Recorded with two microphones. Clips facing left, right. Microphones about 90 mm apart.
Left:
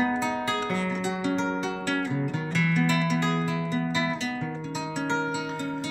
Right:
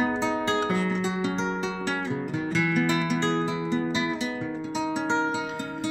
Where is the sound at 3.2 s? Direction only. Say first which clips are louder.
Right 1 dB; 30° right (ahead or behind).